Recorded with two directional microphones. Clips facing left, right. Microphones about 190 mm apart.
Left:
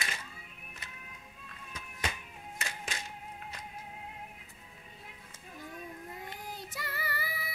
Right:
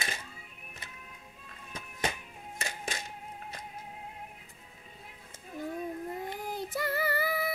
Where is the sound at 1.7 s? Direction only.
45° right (ahead or behind).